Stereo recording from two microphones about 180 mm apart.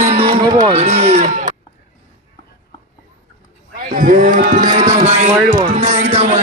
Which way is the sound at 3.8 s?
50° right (ahead or behind).